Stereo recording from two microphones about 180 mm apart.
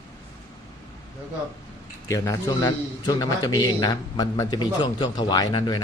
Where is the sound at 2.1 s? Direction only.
20° left (ahead or behind).